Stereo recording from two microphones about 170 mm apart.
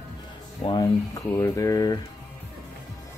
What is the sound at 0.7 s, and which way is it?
Speech, 25° left (ahead or behind).